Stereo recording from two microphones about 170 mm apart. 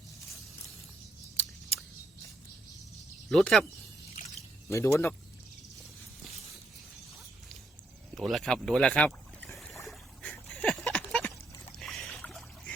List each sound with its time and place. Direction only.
3.2 s speech: centre (ahead or behind)
4.7 s speech: 15° left (ahead or behind)
8.1 s boat: centre (ahead or behind)
9.8 s a sound: 10° left (ahead or behind)
11.8 s boat: centre (ahead or behind)